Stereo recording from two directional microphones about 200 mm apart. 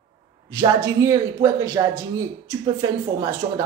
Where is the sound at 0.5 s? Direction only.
15° right (ahead or behind).